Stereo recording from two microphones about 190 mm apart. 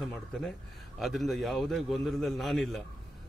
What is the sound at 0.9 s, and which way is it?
Speech, centre (ahead or behind).